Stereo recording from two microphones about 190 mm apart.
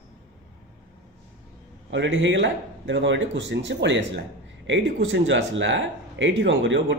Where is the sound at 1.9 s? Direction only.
80° right.